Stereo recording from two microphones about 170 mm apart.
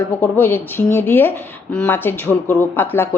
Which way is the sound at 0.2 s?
15° left (ahead or behind).